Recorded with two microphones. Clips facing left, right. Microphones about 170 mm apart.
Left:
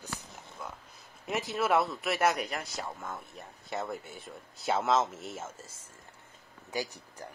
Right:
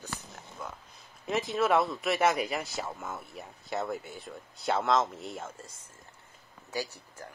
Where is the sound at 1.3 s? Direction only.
5° left (ahead or behind).